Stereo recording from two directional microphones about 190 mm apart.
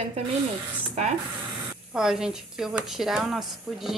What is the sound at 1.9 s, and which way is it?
A woman's voice, centre (ahead or behind).